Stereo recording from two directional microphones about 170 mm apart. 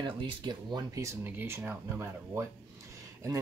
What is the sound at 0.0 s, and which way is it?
Speech, 25° right (ahead or behind).